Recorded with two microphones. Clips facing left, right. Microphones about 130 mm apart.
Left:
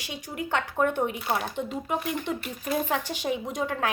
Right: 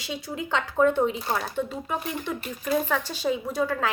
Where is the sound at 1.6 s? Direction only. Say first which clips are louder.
Right 1 dB; 15° left (ahead or behind).